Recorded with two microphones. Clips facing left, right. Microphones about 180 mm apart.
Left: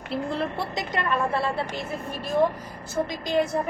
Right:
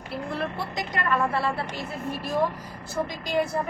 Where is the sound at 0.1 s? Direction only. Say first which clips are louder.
Left 3 dB; 25° left (ahead or behind).